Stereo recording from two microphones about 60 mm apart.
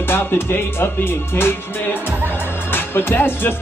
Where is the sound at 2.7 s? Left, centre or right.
Left.